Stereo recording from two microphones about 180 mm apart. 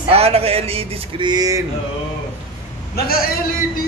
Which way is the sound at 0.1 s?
35° right (ahead or behind).